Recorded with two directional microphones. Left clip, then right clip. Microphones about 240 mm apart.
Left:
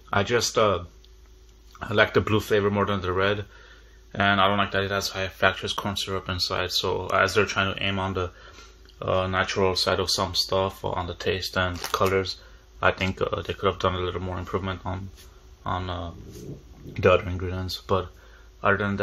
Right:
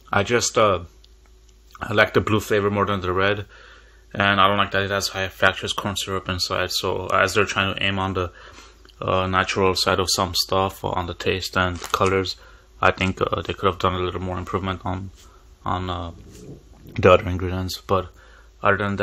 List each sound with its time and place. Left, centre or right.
0.1 s speech: right